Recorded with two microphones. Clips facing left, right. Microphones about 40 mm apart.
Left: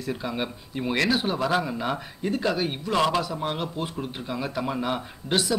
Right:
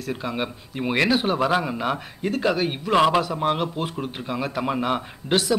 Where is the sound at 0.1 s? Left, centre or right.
Centre.